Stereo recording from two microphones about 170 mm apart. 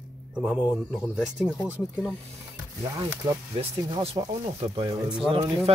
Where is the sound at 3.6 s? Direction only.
35° right (ahead or behind).